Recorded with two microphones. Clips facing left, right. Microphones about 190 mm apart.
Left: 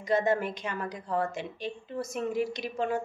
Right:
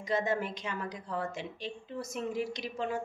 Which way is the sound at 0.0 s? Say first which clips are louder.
Left 5 dB; 55° left (ahead or behind).